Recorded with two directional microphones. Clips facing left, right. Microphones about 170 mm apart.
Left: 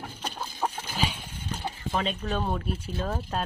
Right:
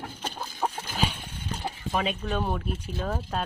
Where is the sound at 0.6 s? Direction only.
Centre (ahead or behind).